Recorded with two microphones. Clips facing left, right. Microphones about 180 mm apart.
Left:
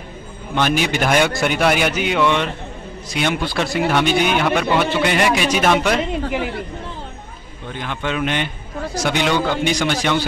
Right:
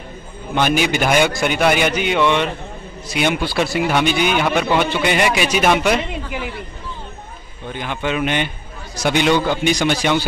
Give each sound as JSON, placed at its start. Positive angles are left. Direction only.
{"t": 0.6, "sound": "a man's voice", "side_deg": -5}
{"t": 7.7, "sound": "a man's voice", "side_deg": -5}